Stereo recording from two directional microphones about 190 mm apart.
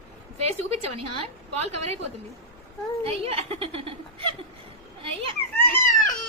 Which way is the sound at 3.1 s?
30° right (ahead or behind).